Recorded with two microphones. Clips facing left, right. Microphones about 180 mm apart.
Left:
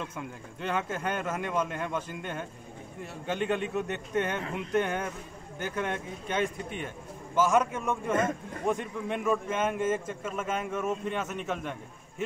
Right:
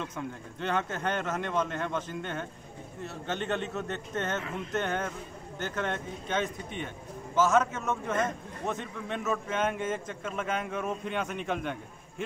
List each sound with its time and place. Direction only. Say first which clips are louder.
0.0 s a man's voice: right 2 dB; 5° left (ahead or behind)